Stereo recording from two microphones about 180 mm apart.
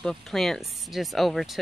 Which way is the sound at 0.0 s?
Centre (ahead or behind).